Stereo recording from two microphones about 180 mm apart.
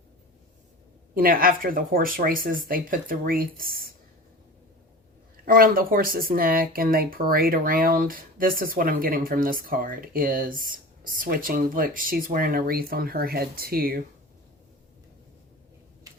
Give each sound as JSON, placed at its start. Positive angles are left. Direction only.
{"t": 1.1, "sound": "speech", "side_deg": -55}
{"t": 5.5, "sound": "speech", "side_deg": -50}